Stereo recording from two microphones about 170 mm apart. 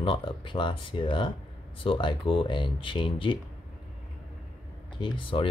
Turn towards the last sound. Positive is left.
turn(degrees=30)  # may be behind; listen again after turning